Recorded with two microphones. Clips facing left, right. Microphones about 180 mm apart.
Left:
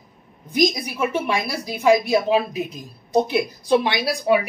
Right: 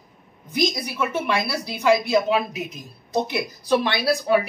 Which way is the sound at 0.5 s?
15° left (ahead or behind).